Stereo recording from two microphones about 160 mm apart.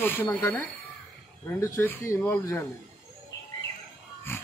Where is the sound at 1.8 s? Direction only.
15° left (ahead or behind).